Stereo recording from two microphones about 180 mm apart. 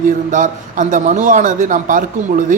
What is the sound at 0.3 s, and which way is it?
Speech, 45° right (ahead or behind).